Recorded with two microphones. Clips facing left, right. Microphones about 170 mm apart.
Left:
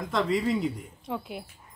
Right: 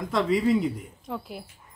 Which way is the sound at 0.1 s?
Centre (ahead or behind).